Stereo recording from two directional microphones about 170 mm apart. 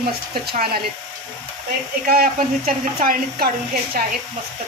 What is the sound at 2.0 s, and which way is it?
A woman's voice, 60° right (ahead or behind).